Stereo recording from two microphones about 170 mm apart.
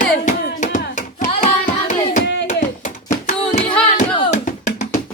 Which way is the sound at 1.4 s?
50° left (ahead or behind).